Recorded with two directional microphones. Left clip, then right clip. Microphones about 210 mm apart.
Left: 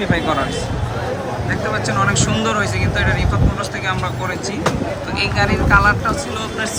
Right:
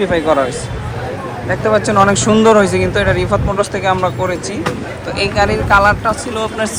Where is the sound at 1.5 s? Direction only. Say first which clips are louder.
Right 9 dB; 20° right (ahead or behind).